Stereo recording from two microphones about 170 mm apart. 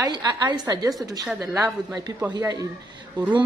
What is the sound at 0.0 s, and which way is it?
Speech, 25° right (ahead or behind).